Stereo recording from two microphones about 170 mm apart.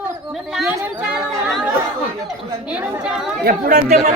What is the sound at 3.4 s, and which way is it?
Speech, 60° right (ahead or behind).